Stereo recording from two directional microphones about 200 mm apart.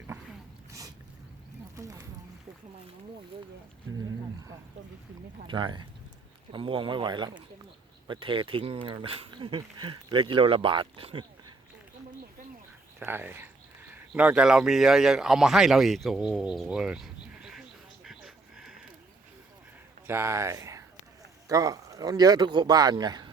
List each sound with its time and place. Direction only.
1.7 s boat: 15° right (ahead or behind)
3.9 s speech: 90° right
5.5 s speech: 20° right (ahead or behind)
13.0 s speech: 10° right (ahead or behind)
20.1 s speech: 10° right (ahead or behind)